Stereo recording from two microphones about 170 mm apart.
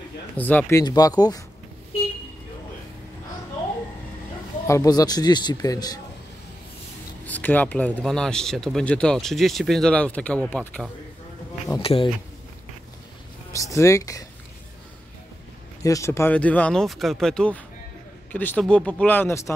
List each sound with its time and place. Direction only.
0.4 s speech: 10° left (ahead or behind)
4.6 s speech: 20° left (ahead or behind)
7.2 s speech: 10° left (ahead or behind)
11.8 s speech: 35° left (ahead or behind)
13.5 s speech: 20° left (ahead or behind)
15.8 s speech: 20° left (ahead or behind)